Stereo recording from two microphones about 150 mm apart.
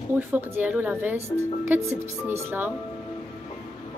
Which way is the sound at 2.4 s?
15° right (ahead or behind).